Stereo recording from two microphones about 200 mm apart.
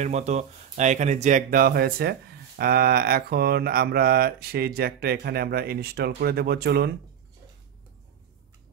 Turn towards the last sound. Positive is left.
turn(degrees=-55)  # may be behind; listen again after turning